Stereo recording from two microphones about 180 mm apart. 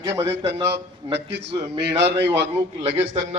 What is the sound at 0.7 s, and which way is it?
A man's voice, 75° right (ahead or behind).